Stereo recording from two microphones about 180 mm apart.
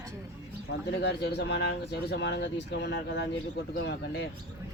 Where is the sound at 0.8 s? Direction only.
70° left (ahead or behind).